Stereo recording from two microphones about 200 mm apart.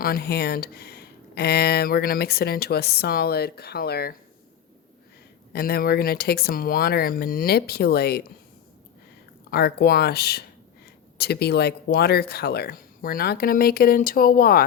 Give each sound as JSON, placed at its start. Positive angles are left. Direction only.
{"t": 0.0, "sound": "speech", "side_deg": 50}
{"t": 5.5, "sound": "speech", "side_deg": 50}
{"t": 9.5, "sound": "speech", "side_deg": 50}